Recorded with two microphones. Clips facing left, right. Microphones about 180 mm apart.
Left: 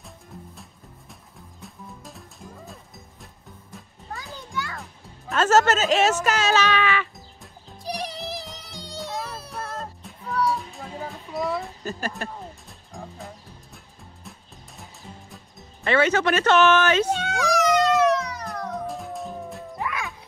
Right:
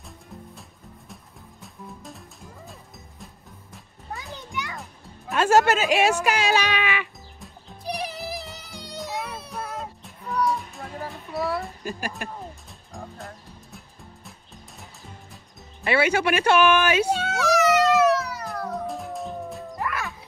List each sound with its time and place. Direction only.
1.6 s music: centre (ahead or behind)
4.3 s children playing: 20° right (ahead or behind)
5.3 s speech: 10° right (ahead or behind)
7.4 s music: 5° right (ahead or behind)
12.2 s speech: 15° right (ahead or behind)
12.6 s music: centre (ahead or behind)
15.8 s a sound: 10° right (ahead or behind)